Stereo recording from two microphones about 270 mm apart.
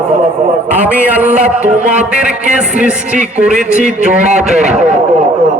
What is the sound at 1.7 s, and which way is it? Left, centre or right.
A man's voice, centre.